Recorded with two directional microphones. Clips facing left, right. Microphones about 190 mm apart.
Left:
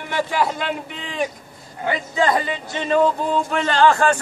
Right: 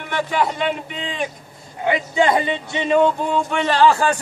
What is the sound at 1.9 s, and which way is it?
Speech, 25° right (ahead or behind).